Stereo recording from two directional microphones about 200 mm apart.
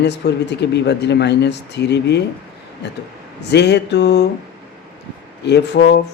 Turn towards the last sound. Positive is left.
turn(degrees=60)  # may be behind; listen again after turning